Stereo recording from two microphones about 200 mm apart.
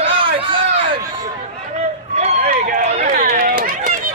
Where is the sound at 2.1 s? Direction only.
35° right (ahead or behind).